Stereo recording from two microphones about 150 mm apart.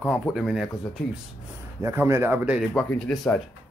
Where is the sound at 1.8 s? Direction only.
20° right (ahead or behind).